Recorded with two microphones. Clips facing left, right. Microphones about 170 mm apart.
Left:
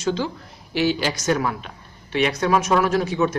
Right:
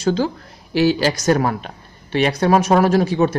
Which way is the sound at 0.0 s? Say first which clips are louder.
Right 5 dB; 40° right (ahead or behind).